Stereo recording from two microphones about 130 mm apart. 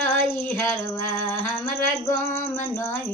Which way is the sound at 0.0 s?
20° left (ahead or behind).